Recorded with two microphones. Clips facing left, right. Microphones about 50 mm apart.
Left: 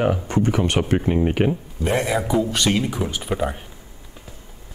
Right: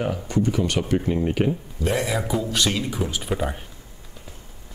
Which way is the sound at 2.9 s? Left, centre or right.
Centre.